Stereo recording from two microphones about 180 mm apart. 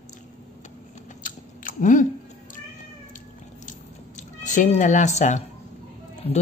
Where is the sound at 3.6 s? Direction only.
45° left (ahead or behind).